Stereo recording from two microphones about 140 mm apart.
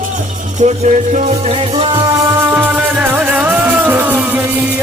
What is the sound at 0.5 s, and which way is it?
Music, 55° right (ahead or behind).